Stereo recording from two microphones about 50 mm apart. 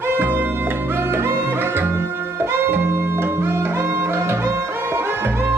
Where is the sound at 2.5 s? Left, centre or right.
Right.